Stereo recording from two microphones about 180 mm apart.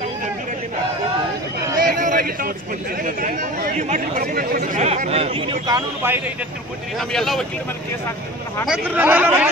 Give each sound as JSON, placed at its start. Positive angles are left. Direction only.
{"t": 1.8, "sound": "a sound", "side_deg": -50}
{"t": 3.0, "sound": "speech", "side_deg": -50}
{"t": 3.7, "sound": "a man's voice", "side_deg": -40}
{"t": 4.2, "sound": "a man's voice", "side_deg": -55}
{"t": 7.0, "sound": "speech", "side_deg": 0}
{"t": 8.6, "sound": "speech", "side_deg": -5}